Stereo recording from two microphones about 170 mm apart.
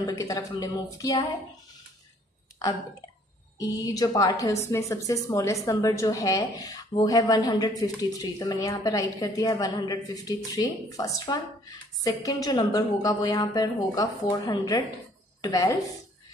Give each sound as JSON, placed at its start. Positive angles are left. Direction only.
{"t": 0.2, "sound": "a woman's voice", "side_deg": 20}
{"t": 3.5, "sound": "a woman's voice", "side_deg": 20}